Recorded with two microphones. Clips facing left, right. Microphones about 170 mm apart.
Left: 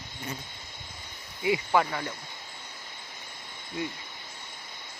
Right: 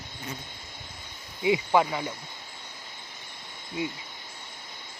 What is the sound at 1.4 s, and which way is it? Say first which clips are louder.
Speech: right 2 dB; 20° right (ahead or behind).